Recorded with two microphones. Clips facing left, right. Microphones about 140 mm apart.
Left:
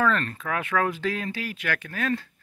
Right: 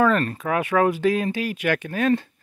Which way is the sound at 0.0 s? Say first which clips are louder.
Right 5 dB; 15° right (ahead or behind).